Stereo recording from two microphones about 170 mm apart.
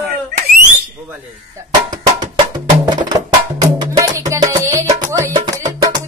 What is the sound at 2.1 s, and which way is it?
Music, 25° right (ahead or behind).